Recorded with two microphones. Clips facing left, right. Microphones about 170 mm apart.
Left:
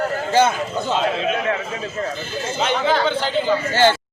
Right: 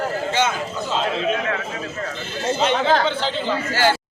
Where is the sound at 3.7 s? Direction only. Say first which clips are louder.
Left 3 dB; 25° left (ahead or behind).